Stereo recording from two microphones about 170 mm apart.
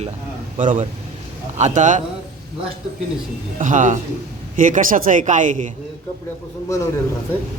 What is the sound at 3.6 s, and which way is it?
Speech, 45° right (ahead or behind).